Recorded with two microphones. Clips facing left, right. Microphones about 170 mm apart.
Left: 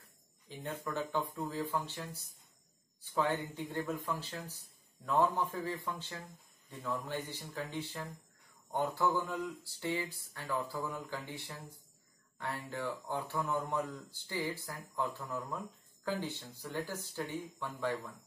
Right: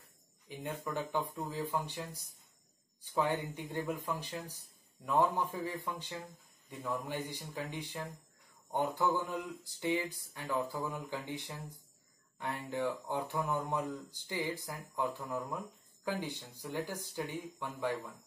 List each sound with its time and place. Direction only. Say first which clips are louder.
0.5 s speech: right 1 dB; 15° right (ahead or behind)